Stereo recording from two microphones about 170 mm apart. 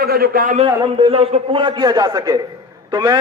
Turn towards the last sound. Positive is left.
turn(degrees=-25)  # may be behind; listen again after turning